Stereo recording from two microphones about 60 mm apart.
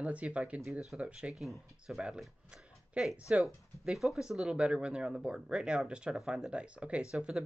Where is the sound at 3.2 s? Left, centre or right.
Centre.